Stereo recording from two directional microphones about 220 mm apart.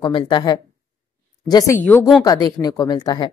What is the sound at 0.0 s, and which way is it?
A woman's voice, 20° left (ahead or behind).